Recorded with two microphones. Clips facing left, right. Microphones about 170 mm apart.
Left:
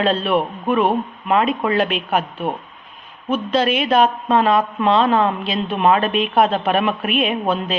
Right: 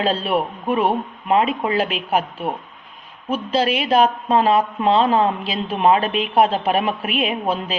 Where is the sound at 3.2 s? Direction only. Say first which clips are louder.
Left 2 dB; 30° right (ahead or behind).